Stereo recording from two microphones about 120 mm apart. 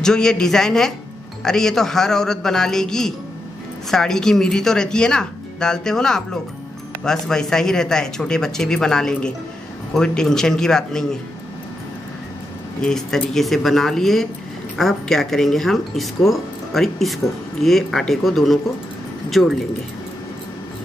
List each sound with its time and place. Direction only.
0.0 s speech: 5° left (ahead or behind)
12.8 s speech: 5° left (ahead or behind)